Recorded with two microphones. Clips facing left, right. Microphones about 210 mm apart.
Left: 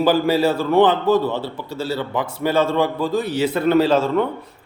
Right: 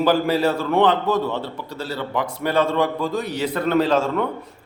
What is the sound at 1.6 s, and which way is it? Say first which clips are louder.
Speech: left 4 dB; 25° left (ahead or behind).